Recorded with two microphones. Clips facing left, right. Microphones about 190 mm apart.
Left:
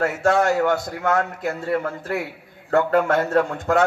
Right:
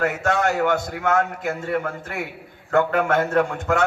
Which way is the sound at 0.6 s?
55° right (ahead or behind).